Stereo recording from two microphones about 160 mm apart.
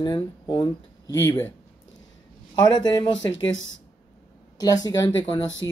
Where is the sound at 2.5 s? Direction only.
25° left (ahead or behind).